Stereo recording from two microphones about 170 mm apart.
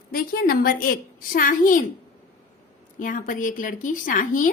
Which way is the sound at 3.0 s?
50° left (ahead or behind).